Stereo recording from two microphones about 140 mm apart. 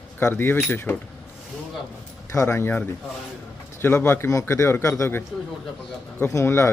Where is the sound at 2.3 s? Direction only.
20° left (ahead or behind).